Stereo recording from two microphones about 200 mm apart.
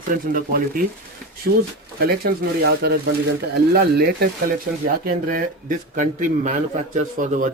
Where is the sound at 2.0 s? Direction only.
50° right (ahead or behind).